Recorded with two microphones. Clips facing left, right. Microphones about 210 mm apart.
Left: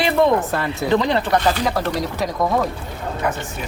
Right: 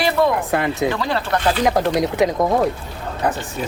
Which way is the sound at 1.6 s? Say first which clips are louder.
Right 4 dB; 20° right (ahead or behind).